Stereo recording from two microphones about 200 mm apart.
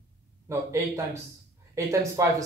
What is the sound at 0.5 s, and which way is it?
Speech, 15° right (ahead or behind).